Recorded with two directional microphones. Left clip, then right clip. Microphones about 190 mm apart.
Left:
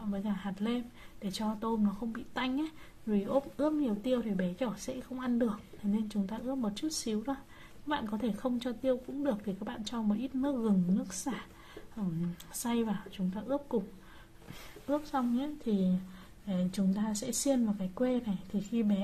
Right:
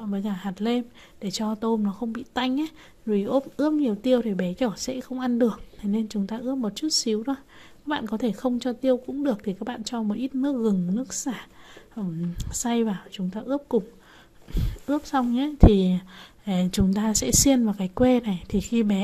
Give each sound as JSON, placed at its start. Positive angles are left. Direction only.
{"t": 0.0, "sound": "speech", "side_deg": -30}
{"t": 14.9, "sound": "a woman's voice", "side_deg": -35}